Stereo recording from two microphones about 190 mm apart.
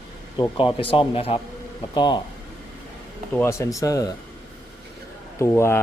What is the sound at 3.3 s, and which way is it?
Speech, 15° left (ahead or behind).